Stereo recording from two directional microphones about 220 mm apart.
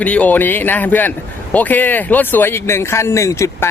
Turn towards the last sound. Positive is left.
turn(degrees=15)  # may be behind; listen again after turning